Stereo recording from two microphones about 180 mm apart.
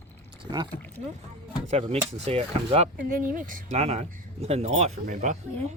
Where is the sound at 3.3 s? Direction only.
45° right (ahead or behind).